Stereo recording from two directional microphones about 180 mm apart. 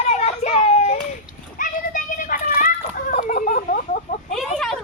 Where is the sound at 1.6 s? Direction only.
45° left (ahead or behind).